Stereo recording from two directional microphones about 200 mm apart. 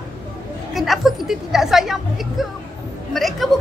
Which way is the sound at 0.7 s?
Centre (ahead or behind).